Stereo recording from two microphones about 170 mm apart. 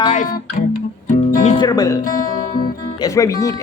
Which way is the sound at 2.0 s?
50° left (ahead or behind).